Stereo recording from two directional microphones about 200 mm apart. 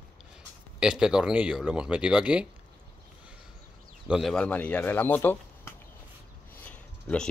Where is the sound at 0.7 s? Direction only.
5° right (ahead or behind).